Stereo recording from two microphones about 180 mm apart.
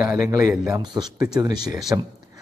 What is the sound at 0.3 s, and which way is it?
Speech, 20° right (ahead or behind).